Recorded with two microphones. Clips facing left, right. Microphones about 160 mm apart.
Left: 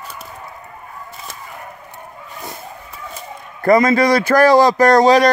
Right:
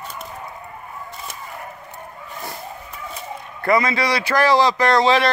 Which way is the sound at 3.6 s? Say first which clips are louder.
Left 7 dB; 45° left (ahead or behind).